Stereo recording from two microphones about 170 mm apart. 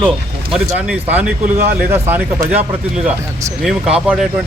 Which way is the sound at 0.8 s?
10° right (ahead or behind).